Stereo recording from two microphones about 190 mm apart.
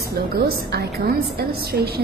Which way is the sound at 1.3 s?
55° right (ahead or behind).